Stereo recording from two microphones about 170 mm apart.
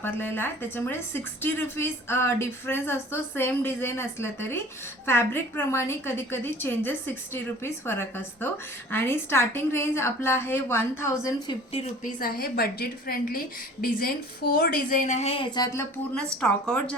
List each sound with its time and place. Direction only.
0.0 s a woman's voice: 10° left (ahead or behind)
11.7 s a woman's voice: 35° left (ahead or behind)
12.2 s a woman's voice: 60° left (ahead or behind); by 16.9 s 5° left (ahead or behind)